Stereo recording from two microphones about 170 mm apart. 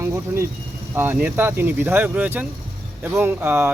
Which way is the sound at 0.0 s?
15° right (ahead or behind).